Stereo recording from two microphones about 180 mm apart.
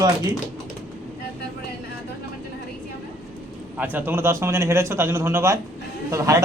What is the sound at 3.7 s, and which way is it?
Speech, 10° right (ahead or behind).